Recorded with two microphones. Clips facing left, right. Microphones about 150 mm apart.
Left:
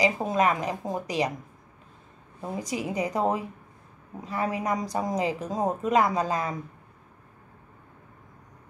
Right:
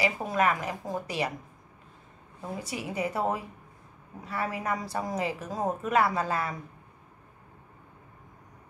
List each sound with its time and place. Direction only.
0.0 s speech: 20° left (ahead or behind)
2.4 s speech: 20° left (ahead or behind)